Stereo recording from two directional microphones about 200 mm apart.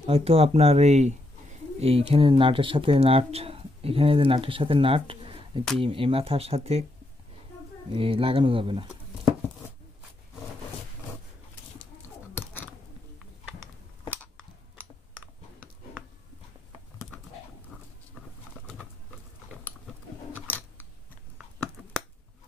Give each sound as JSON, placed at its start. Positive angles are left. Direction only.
{"t": 0.0, "sound": "speech", "side_deg": -30}
{"t": 7.9, "sound": "speech", "side_deg": -25}
{"t": 14.0, "sound": "clicking", "side_deg": 10}
{"t": 20.5, "sound": "scissors", "side_deg": 10}